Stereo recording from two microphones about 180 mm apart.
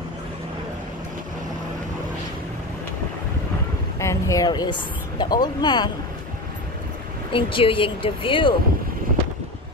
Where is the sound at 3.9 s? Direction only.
15° left (ahead or behind).